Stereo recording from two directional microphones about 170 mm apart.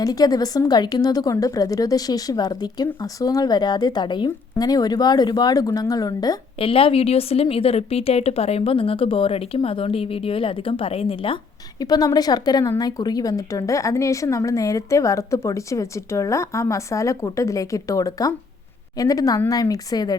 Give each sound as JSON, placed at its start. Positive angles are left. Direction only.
{"t": 0.0, "sound": "a woman's voice", "side_deg": 20}
{"t": 6.7, "sound": "a woman's voice", "side_deg": 35}